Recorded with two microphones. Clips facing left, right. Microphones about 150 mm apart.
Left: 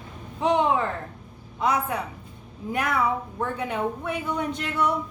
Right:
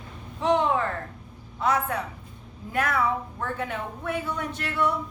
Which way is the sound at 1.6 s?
15° left (ahead or behind).